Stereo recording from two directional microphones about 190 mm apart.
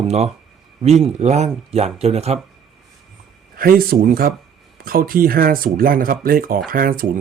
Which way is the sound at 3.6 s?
50° right (ahead or behind).